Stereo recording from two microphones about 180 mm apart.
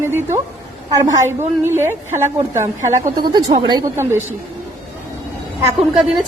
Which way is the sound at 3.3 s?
25° right (ahead or behind).